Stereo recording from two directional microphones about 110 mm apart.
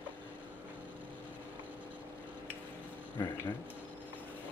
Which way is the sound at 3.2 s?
30° left (ahead or behind).